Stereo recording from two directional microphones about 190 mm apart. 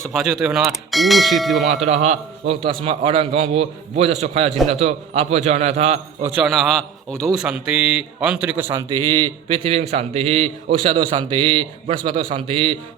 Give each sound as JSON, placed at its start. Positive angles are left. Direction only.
{"t": 0.1, "sound": "a man's voice", "side_deg": 0}
{"t": 1.6, "sound": "a man's voice", "side_deg": -35}
{"t": 6.2, "sound": "a man's voice", "side_deg": -5}